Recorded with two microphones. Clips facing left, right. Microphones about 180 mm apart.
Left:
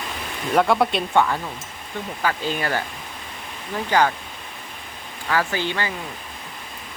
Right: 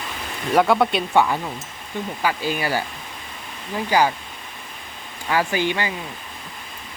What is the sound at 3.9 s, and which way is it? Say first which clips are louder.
Speech: even; 10° right (ahead or behind).